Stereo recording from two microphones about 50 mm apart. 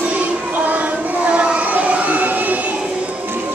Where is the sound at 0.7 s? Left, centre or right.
Right.